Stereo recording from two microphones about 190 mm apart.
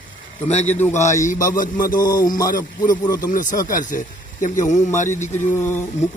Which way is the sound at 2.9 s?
20° left (ahead or behind).